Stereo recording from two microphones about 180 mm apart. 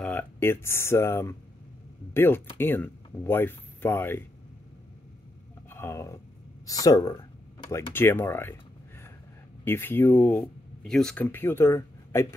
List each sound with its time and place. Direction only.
0.0 s speech: 10° left (ahead or behind)
5.7 s speech: 15° left (ahead or behind)
9.7 s speech: 10° left (ahead or behind)